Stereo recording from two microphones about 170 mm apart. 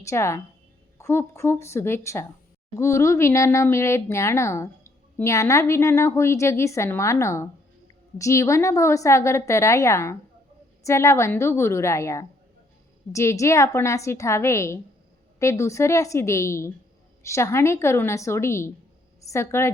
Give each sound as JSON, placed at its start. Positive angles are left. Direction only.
{"t": 0.0, "sound": "speech", "side_deg": 15}